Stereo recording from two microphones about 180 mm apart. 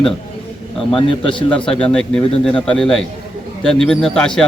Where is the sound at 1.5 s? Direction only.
5° left (ahead or behind).